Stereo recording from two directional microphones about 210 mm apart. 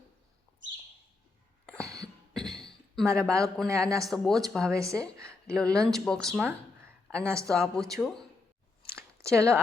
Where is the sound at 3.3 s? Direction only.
15° right (ahead or behind).